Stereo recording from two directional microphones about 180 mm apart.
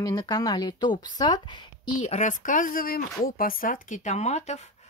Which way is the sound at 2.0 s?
40° left (ahead or behind).